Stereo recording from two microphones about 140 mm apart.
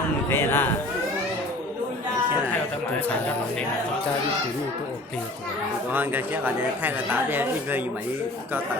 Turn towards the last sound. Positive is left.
turn(degrees=-15)  # may be behind; listen again after turning